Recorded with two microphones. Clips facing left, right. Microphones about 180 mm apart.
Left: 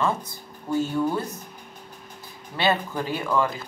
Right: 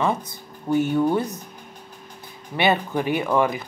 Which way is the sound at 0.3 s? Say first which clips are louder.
Right 4 dB; 20° right (ahead or behind).